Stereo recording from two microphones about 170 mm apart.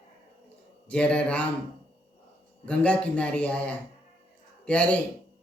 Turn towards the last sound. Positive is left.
turn(degrees=5)  # may be behind; listen again after turning